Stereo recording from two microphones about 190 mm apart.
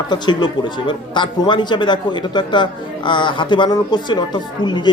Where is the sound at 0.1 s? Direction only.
25° left (ahead or behind).